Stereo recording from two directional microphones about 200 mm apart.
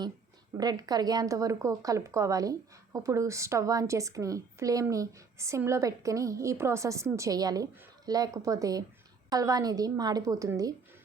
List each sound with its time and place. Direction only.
0.5 s speech: 20° right (ahead or behind)